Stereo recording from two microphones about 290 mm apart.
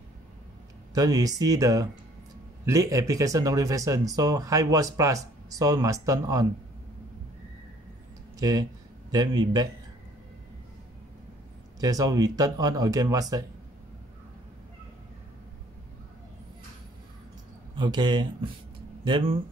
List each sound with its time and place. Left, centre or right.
0.9 s speech: centre
8.4 s speech: centre
11.8 s speech: centre
17.7 s speech: centre